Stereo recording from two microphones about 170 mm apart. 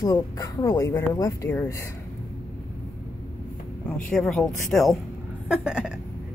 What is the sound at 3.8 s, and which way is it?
Speech, 5° left (ahead or behind).